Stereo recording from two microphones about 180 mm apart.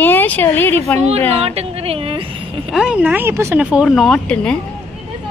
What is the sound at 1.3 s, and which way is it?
A woman's voice, 35° right (ahead or behind).